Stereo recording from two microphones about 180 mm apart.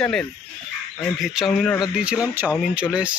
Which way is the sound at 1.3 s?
Centre (ahead or behind).